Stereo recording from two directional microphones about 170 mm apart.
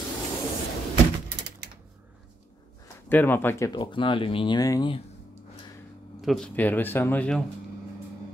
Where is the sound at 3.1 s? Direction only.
10° left (ahead or behind).